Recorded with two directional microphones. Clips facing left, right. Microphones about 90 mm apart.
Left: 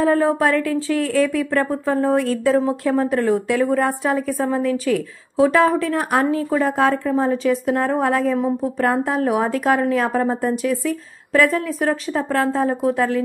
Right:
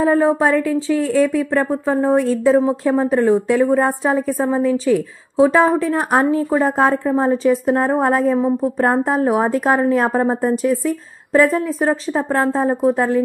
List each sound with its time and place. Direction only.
0.0 s a woman's voice: 20° right (ahead or behind); by 13.2 s 40° right (ahead or behind)